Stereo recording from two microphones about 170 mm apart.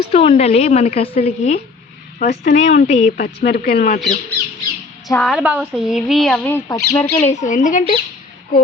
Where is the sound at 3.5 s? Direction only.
65° left (ahead or behind).